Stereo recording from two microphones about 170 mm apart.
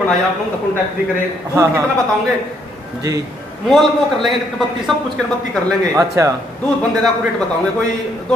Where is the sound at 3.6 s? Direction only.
Centre (ahead or behind).